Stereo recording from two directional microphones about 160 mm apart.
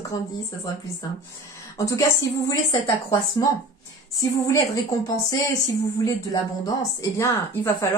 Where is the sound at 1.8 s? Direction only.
20° left (ahead or behind).